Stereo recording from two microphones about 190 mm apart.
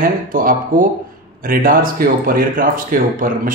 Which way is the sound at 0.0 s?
45° right (ahead or behind).